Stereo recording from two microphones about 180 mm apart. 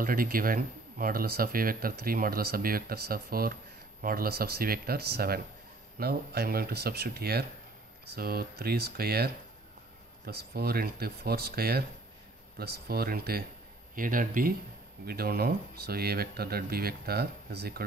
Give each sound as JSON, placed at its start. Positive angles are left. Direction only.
{"t": 0.0, "sound": "speech", "side_deg": -55}